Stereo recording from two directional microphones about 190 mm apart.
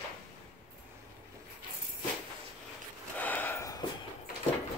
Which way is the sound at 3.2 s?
10° left (ahead or behind).